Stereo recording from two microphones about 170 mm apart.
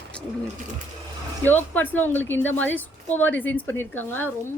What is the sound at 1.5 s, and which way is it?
Speech, 10° left (ahead or behind).